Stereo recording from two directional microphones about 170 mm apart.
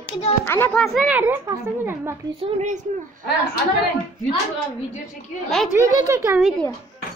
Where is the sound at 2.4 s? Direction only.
45° right (ahead or behind).